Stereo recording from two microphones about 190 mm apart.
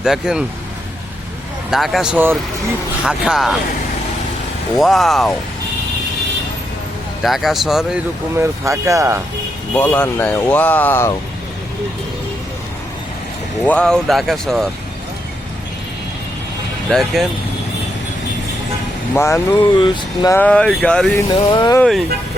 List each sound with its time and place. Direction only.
0.0 s speech: 5° right (ahead or behind)
1.7 s speech: centre (ahead or behind)
4.8 s speech: centre (ahead or behind)
7.2 s speech: centre (ahead or behind)
8.4 s speech: 15° right (ahead or behind)
9.7 s speech: 10° left (ahead or behind)
13.7 s speech: 5° left (ahead or behind)
16.9 s speech: centre (ahead or behind)
19.1 s speech: 15° left (ahead or behind)
19.6 s speech: 25° left (ahead or behind)
20.3 s speech: 5° left (ahead or behind)
21.2 s speech: 25° left (ahead or behind)
21.8 s speech: centre (ahead or behind)